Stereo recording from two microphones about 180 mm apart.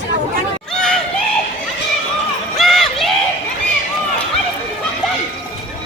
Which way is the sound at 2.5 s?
Centre (ahead or behind).